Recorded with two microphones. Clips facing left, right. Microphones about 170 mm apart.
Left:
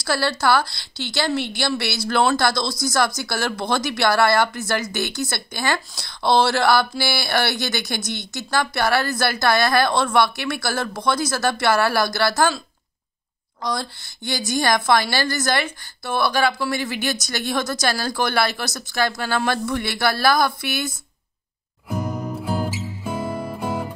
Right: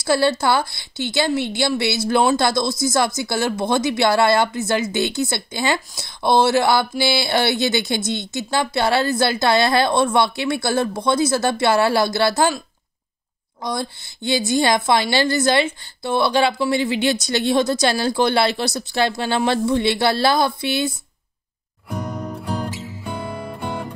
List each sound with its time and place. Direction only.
0.0 s a woman's voice: 25° right (ahead or behind)
21.8 s music: 5° left (ahead or behind)